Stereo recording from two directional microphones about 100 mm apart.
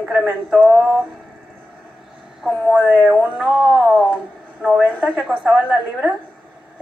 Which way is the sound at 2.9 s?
5° left (ahead or behind).